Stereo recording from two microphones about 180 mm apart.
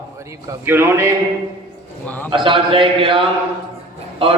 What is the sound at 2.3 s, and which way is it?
Speech, 25° right (ahead or behind).